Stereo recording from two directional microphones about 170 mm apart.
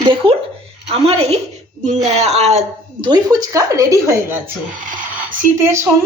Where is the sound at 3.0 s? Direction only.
25° right (ahead or behind).